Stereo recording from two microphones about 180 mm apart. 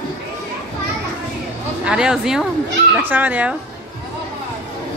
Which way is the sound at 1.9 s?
5° right (ahead or behind).